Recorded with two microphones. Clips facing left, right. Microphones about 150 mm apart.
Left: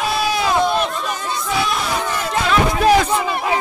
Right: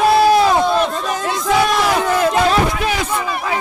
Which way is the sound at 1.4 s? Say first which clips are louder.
Right 7 dB; 75° right (ahead or behind).